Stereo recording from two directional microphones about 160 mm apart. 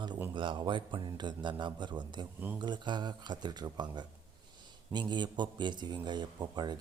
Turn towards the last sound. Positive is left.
turn(degrees=-25)  # may be behind; listen again after turning